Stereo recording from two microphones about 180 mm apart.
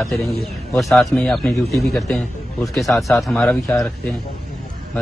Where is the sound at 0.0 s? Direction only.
Centre (ahead or behind).